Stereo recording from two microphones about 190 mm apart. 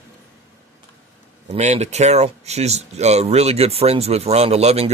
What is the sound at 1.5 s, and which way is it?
Speech, 35° right (ahead or behind).